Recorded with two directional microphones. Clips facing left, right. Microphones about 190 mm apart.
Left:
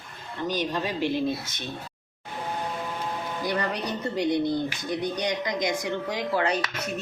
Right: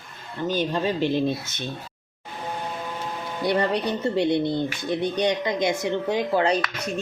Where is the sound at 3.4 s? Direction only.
30° right (ahead or behind).